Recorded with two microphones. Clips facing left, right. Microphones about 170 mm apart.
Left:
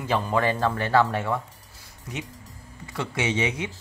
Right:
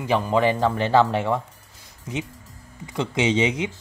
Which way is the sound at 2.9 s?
20° right (ahead or behind).